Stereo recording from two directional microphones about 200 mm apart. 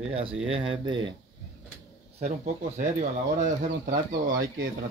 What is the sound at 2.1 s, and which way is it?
Speech, 35° right (ahead or behind).